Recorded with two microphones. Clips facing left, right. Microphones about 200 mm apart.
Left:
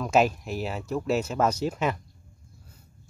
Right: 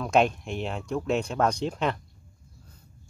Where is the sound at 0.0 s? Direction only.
5° left (ahead or behind).